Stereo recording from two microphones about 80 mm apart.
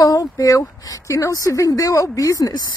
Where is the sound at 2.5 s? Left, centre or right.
Left.